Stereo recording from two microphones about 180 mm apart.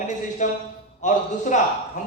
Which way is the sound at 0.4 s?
40° left (ahead or behind).